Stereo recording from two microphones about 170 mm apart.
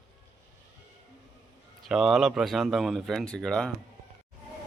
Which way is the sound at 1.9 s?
Centre (ahead or behind).